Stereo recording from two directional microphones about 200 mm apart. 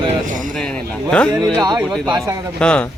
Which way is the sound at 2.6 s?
5° left (ahead or behind).